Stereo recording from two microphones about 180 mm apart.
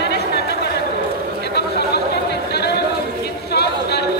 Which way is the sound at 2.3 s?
65° left (ahead or behind).